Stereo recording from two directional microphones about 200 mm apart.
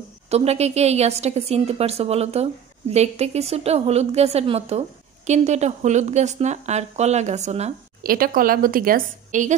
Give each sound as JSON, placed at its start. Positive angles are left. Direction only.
{"t": 0.3, "sound": "a woman's voice", "side_deg": -30}
{"t": 8.0, "sound": "a woman's voice", "side_deg": -45}